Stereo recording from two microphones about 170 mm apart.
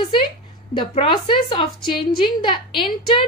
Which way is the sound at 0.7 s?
30° left (ahead or behind).